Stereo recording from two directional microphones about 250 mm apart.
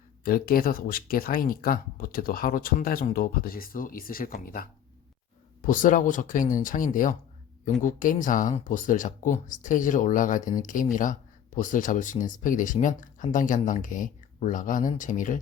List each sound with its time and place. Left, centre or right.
0.3 s speech: left